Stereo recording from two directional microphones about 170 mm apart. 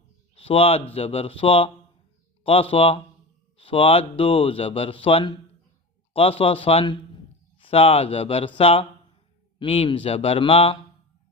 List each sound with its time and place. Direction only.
0.3 s a man's voice: 35° left (ahead or behind)
6.4 s speech: 35° left (ahead or behind)